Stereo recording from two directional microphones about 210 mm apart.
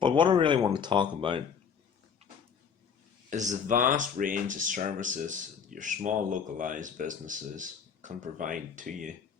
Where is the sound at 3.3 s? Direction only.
35° right (ahead or behind).